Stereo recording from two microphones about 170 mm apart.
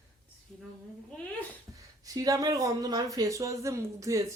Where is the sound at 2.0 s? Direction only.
20° right (ahead or behind).